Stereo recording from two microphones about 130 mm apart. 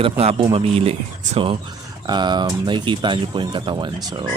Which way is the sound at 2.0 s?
35° right (ahead or behind).